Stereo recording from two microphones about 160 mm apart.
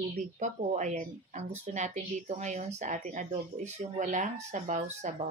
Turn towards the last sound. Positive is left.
turn(degrees=-50)  # may be behind; listen again after turning